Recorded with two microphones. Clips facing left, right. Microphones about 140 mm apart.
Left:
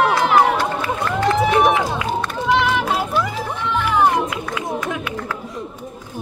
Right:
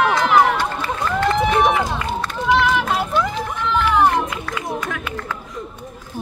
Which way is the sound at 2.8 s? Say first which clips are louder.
Even; 10° left (ahead or behind).